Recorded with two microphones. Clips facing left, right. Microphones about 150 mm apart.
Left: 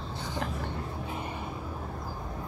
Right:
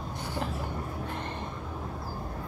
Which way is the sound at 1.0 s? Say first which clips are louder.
Even; 5° left (ahead or behind).